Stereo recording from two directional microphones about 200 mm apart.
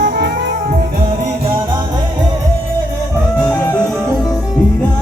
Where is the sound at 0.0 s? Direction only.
55° right (ahead or behind).